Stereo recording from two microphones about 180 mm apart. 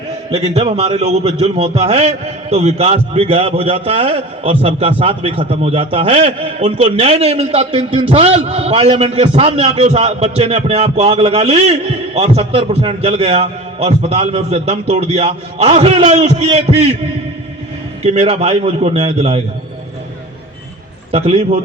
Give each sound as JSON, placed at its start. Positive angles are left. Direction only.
{"t": 0.5, "sound": "a man's voice", "side_deg": -35}
{"t": 18.0, "sound": "a man's voice", "side_deg": -35}
{"t": 21.1, "sound": "a man's voice", "side_deg": -35}